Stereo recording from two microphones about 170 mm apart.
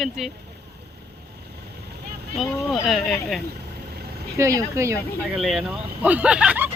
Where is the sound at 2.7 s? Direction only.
Centre (ahead or behind).